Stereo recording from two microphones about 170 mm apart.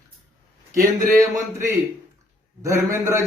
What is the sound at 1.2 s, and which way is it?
A man's voice, 20° right (ahead or behind).